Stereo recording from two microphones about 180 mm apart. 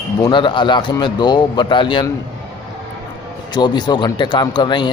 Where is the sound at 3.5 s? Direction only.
25° left (ahead or behind).